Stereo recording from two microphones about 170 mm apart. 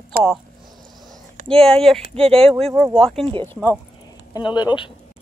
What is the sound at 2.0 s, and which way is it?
Speech, 35° right (ahead or behind).